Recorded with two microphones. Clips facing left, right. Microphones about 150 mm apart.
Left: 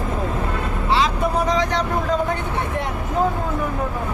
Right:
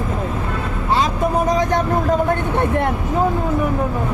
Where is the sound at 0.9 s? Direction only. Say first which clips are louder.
Right 2 dB; 45° right (ahead or behind).